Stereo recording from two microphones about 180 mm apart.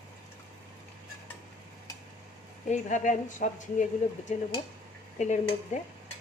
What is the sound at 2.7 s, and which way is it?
A woman's voice, 45° left (ahead or behind).